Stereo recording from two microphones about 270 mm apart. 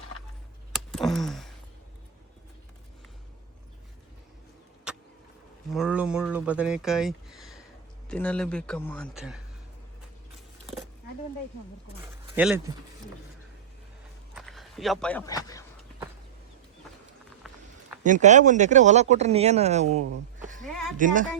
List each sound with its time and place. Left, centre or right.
0.7 s a sound: centre
4.9 s vehicle: centre
5.7 s speech: centre
12.4 s speech: centre
14.3 s speech: centre
17.5 s a sound: centre
18.0 s speech: right
21.0 s speech: right